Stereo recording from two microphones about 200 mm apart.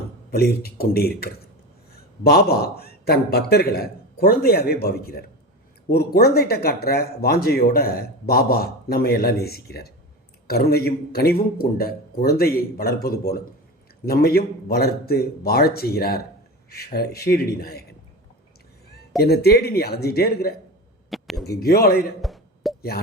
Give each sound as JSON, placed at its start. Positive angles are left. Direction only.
{"t": 0.3, "sound": "speech", "side_deg": 50}
{"t": 14.0, "sound": "speech", "side_deg": 50}
{"t": 19.1, "sound": "speech", "side_deg": 50}
{"t": 21.1, "sound": "a sound", "side_deg": 0}
{"t": 21.6, "sound": "speech", "side_deg": 50}
{"t": 22.2, "sound": "a sound", "side_deg": 0}